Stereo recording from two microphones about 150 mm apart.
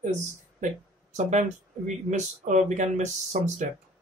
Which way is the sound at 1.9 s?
55° right (ahead or behind).